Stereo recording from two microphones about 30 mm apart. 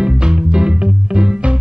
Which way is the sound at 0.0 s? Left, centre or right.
Right.